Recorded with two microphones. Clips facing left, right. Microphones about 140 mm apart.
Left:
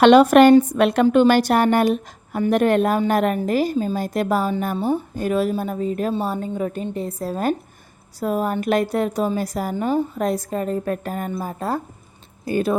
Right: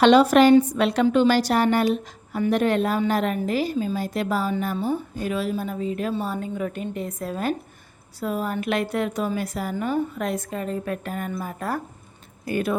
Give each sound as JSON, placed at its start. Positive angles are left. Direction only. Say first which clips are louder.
{"t": 0.0, "sound": "a woman's voice", "louder": "left 4 dB", "side_deg": 55}
{"t": 11.3, "sound": "speech", "louder": "left 4 dB", "side_deg": 30}